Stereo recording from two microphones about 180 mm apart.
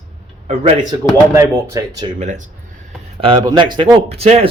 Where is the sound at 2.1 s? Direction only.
40° right (ahead or behind).